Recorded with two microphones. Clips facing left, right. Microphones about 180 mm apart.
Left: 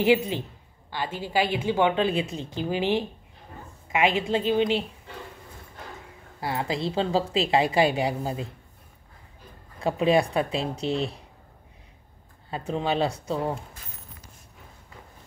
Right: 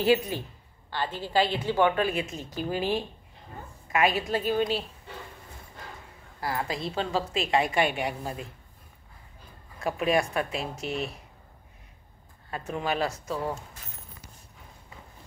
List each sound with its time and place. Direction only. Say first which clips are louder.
0.0 s a woman's voice: left 2 dB; 20° left (ahead or behind)
6.4 s a woman's voice: left 3 dB; 25° left (ahead or behind)
9.8 s a woman's voice: left 4 dB; 30° left (ahead or behind)
12.4 s a woman's voice: left 3 dB; 25° left (ahead or behind)